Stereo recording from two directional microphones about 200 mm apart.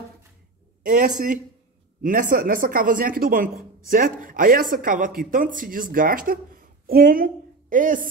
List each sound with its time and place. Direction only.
0.8 s speech: 40° right (ahead or behind)